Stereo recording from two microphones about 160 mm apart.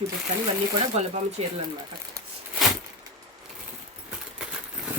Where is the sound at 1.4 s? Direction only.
40° right (ahead or behind).